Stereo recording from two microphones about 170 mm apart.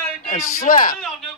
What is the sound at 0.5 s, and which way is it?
Speech, 55° left (ahead or behind).